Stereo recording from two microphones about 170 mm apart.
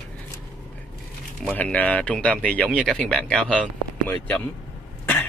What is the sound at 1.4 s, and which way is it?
A man's voice, 5° left (ahead or behind).